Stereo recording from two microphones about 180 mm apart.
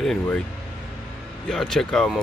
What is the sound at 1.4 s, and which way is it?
Speech, 5° left (ahead or behind).